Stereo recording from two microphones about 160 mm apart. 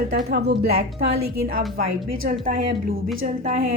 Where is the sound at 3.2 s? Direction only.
60° right (ahead or behind).